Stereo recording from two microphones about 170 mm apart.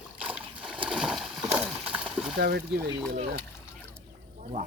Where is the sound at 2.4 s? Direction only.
65° right (ahead or behind).